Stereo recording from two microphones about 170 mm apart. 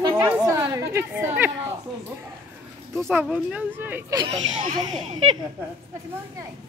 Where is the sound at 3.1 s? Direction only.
10° right (ahead or behind).